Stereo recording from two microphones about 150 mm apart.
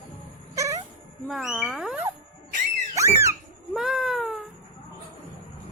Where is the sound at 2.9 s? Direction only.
20° right (ahead or behind).